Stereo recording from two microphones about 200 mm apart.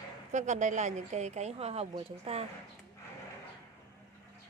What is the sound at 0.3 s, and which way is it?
Speech, 40° right (ahead or behind).